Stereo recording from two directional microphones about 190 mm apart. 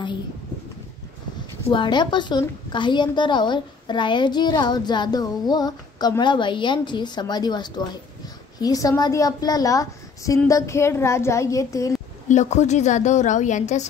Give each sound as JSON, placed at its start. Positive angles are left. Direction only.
{"t": 1.7, "sound": "a woman's voice", "side_deg": 25}
{"t": 12.3, "sound": "a woman's voice", "side_deg": 35}